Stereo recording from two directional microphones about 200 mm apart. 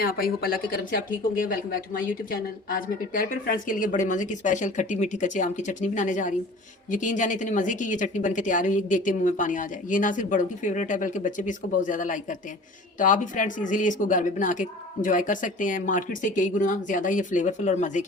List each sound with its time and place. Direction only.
0.0 s speech: 45° left (ahead or behind)